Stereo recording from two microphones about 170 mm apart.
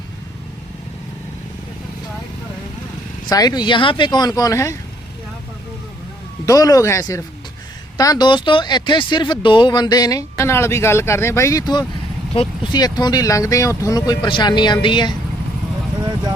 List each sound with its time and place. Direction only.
3.2 s speech: 20° left (ahead or behind)
6.4 s speech: 20° left (ahead or behind)
16.0 s vehicle: 25° right (ahead or behind)